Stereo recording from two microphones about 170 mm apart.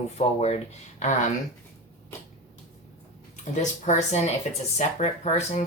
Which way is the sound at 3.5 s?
45° left (ahead or behind).